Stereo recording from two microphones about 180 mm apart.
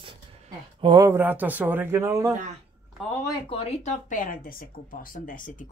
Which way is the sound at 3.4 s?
35° left (ahead or behind).